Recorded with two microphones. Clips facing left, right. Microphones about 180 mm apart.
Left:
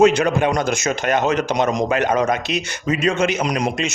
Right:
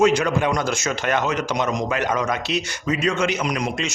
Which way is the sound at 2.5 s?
20° left (ahead or behind).